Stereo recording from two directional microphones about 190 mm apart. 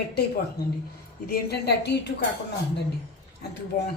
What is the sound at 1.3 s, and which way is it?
Speech, 60° left (ahead or behind).